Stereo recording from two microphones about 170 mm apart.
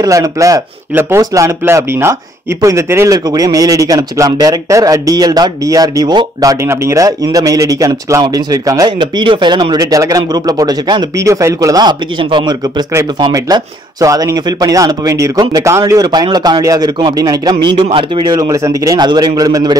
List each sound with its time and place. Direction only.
0.0 s speech: 20° right (ahead or behind)